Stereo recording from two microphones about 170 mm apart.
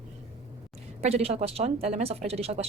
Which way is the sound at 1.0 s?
40° right (ahead or behind).